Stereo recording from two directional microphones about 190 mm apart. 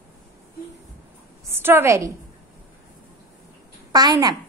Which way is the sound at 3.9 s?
20° right (ahead or behind).